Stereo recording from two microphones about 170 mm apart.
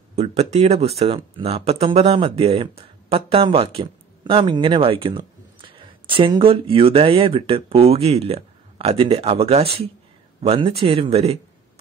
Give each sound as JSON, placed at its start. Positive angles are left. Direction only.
{"t": 0.1, "sound": "speech", "side_deg": -40}